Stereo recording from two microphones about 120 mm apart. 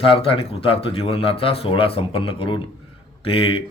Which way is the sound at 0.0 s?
50° left (ahead or behind).